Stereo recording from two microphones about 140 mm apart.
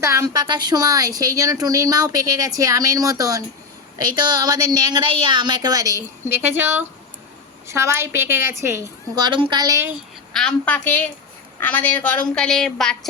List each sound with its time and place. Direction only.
0.0 s a woman's voice: 25° right (ahead or behind)
6.2 s a woman's voice: 15° right (ahead or behind)
10.3 s a woman's voice: 10° left (ahead or behind)